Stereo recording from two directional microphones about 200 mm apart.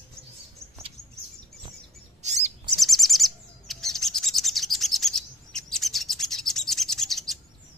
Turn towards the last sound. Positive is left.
turn(degrees=0)  # may be behind; listen again after turning